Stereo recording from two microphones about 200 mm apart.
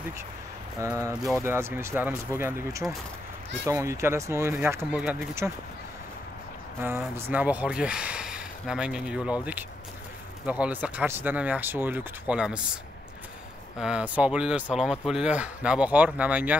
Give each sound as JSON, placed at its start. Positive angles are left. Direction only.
{"t": 0.7, "sound": "speech", "side_deg": -15}
{"t": 1.1, "sound": "speech", "side_deg": -5}
{"t": 6.8, "sound": "speech", "side_deg": -10}
{"t": 13.7, "sound": "speech", "side_deg": -5}